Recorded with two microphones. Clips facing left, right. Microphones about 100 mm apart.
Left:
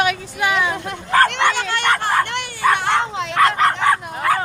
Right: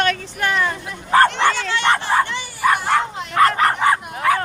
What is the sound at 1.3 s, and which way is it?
Speech, 55° left (ahead or behind).